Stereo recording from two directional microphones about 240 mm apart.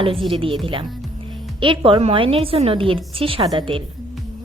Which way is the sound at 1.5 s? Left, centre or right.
Right.